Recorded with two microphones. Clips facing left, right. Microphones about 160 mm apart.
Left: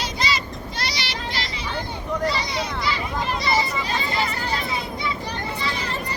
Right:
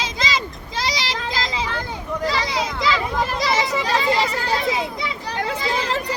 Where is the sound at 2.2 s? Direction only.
90° right.